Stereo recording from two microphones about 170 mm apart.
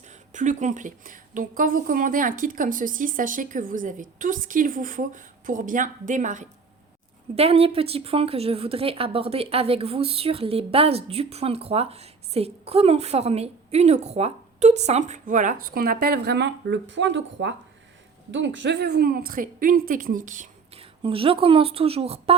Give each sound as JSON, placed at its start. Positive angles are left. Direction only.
{"t": 0.0, "sound": "a woman's voice", "side_deg": -45}
{"t": 7.3, "sound": "a woman's voice", "side_deg": -35}
{"t": 20.7, "sound": "a woman's voice", "side_deg": -30}